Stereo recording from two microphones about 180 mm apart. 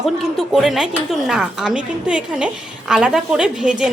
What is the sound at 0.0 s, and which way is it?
Speech, centre (ahead or behind).